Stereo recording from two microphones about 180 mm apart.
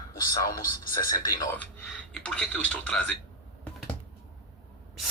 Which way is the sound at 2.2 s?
10° left (ahead or behind).